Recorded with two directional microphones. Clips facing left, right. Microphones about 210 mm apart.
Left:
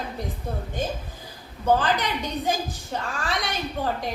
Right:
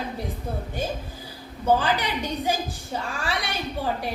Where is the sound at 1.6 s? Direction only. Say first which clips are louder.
Even; 10° right (ahead or behind).